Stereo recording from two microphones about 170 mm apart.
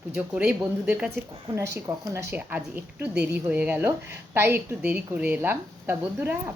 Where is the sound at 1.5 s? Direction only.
20° right (ahead or behind).